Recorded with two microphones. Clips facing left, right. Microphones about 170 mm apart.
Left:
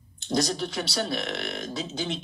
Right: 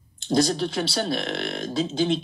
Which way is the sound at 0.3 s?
30° right (ahead or behind).